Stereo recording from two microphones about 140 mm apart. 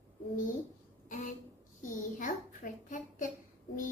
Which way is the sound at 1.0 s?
65° left (ahead or behind).